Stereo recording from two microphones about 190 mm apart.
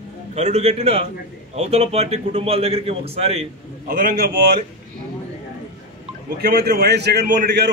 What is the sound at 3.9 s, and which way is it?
Speech, 60° right (ahead or behind).